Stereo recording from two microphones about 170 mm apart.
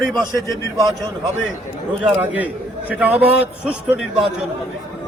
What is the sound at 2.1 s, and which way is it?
A man's voice, 10° right (ahead or behind).